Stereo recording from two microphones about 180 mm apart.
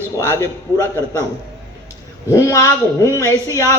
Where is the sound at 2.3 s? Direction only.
15° left (ahead or behind).